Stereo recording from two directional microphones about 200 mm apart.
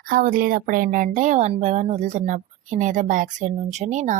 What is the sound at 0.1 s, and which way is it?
Speech, 45° right (ahead or behind).